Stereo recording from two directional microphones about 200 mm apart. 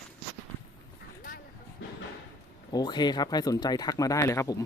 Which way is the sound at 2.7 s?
20° left (ahead or behind).